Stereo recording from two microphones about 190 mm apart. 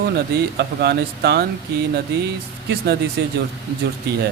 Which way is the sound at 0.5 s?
60° right (ahead or behind).